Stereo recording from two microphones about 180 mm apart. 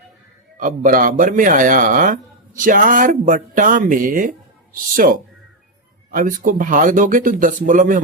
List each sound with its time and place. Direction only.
0.5 s speech: 50° right (ahead or behind)